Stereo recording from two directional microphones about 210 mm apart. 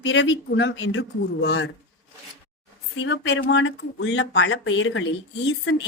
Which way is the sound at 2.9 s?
55° left (ahead or behind).